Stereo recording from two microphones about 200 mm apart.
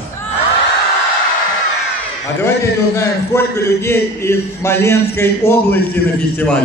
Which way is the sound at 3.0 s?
15° left (ahead or behind).